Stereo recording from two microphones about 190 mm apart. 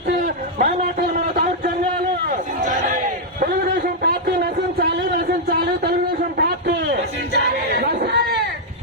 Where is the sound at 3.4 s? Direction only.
55° right (ahead or behind).